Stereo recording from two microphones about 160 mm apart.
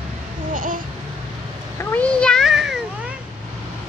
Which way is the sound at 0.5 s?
55° right (ahead or behind).